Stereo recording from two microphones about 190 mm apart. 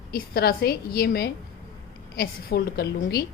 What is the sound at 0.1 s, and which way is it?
A woman's voice, 55° left (ahead or behind).